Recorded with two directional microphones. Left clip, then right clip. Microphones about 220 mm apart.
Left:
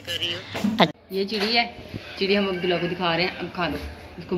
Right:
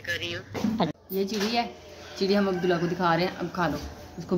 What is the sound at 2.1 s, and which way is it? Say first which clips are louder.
Speech: left 2 dB; 40° right (ahead or behind).